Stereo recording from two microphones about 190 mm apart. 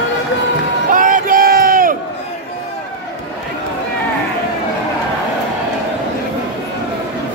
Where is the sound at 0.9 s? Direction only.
45° right (ahead or behind).